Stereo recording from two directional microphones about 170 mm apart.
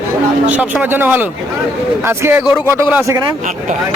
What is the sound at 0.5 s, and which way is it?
Speech, 10° right (ahead or behind).